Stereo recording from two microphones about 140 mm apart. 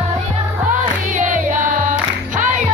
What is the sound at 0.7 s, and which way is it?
Music, 65° right (ahead or behind).